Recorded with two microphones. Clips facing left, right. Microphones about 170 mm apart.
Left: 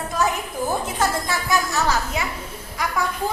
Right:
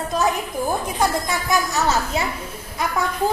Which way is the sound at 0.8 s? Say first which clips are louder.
Right 2 dB; 15° right (ahead or behind).